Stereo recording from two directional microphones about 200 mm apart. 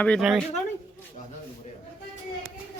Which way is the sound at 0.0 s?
Centre (ahead or behind).